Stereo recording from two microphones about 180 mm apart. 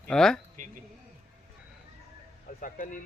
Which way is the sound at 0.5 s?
45° right (ahead or behind).